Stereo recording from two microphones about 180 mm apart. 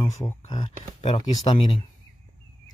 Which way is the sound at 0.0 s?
20° left (ahead or behind).